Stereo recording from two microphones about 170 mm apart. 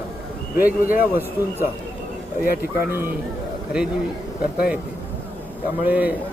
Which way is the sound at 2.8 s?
15° right (ahead or behind).